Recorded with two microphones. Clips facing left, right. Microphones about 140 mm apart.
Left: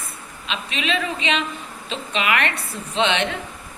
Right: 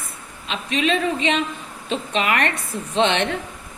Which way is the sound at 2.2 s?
45° right (ahead or behind).